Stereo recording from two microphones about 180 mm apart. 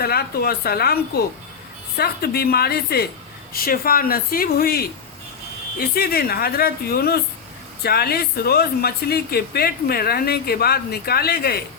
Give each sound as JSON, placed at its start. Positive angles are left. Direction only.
{"t": 0.0, "sound": "speech", "side_deg": 60}
{"t": 5.9, "sound": "speech", "side_deg": 55}